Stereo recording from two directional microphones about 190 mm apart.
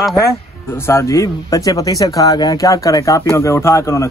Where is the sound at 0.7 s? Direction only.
15° left (ahead or behind).